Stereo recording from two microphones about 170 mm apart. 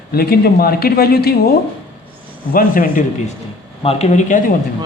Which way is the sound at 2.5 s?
55° left (ahead or behind).